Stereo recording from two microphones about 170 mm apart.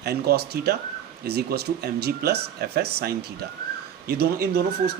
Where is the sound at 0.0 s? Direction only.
70° right (ahead or behind).